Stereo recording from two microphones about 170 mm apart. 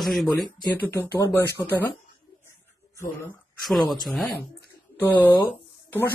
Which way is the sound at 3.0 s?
15° left (ahead or behind).